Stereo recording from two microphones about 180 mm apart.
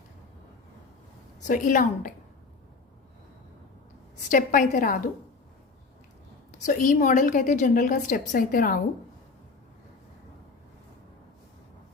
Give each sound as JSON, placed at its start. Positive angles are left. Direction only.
{"t": 1.5, "sound": "a woman's voice", "side_deg": 45}
{"t": 4.3, "sound": "a woman's voice", "side_deg": 50}
{"t": 6.7, "sound": "a woman's voice", "side_deg": 45}